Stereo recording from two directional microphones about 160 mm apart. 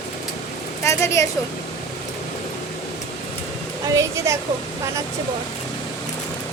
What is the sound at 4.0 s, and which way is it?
Speech, 20° right (ahead or behind).